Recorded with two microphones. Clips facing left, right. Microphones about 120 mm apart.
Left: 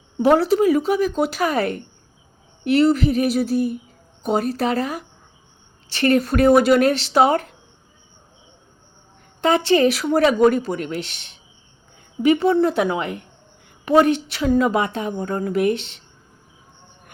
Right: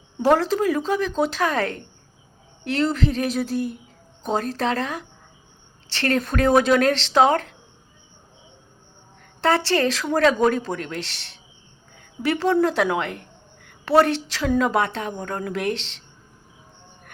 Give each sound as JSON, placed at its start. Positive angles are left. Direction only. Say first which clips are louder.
{"t": 0.2, "sound": "speech", "louder": "left 3 dB", "side_deg": 10}
{"t": 6.1, "sound": "speech", "louder": "left 3 dB", "side_deg": 10}
{"t": 9.4, "sound": "speech", "louder": "left 4 dB", "side_deg": 15}
{"t": 11.1, "sound": "speech", "louder": "right 1 dB", "side_deg": -75}
{"t": 12.2, "sound": "speech", "louder": "left 4 dB", "side_deg": 15}
{"t": 14.0, "sound": "a woman's voice", "louder": "left 3 dB", "side_deg": -85}
{"t": 14.4, "sound": "speech", "louder": "left 2 dB", "side_deg": 10}
{"t": 15.7, "sound": "speech", "louder": "left 5 dB", "side_deg": -90}